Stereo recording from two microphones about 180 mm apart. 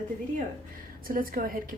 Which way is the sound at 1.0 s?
55° right (ahead or behind).